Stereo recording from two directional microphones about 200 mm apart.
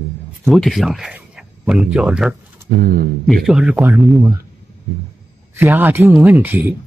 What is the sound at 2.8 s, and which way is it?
Speech, 50° right (ahead or behind).